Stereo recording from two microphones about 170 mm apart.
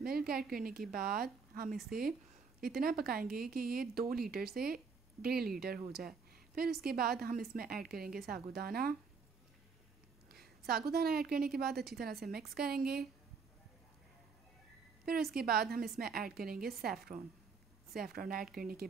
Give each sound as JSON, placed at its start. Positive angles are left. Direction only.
{"t": 0.0, "sound": "speech", "side_deg": -60}
{"t": 10.6, "sound": "speech", "side_deg": -65}
{"t": 15.3, "sound": "speech", "side_deg": -65}